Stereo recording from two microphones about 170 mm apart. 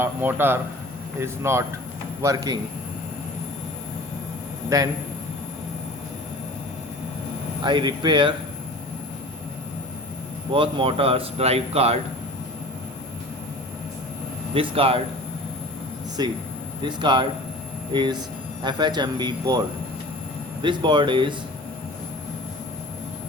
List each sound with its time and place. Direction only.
0.0 s a man's voice: 10° right (ahead or behind)
7.6 s speech: 25° right (ahead or behind)
10.5 s speech: 30° right (ahead or behind)
14.5 s speech: 35° right (ahead or behind)
16.2 s speech: 25° right (ahead or behind)